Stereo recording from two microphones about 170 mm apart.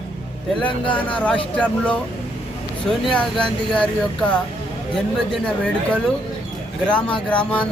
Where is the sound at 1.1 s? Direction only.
5° left (ahead or behind).